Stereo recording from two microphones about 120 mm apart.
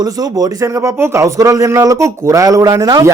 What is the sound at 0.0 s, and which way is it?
Speech, 30° right (ahead or behind).